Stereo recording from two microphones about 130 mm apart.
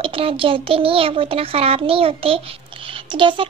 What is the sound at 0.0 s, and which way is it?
A child's voice, 45° right (ahead or behind).